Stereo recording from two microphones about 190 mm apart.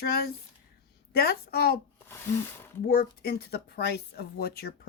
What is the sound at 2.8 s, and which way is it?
A woman's voice, 50° left (ahead or behind).